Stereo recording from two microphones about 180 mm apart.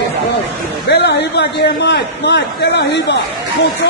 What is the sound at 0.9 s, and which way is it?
A man's voice, 70° left (ahead or behind).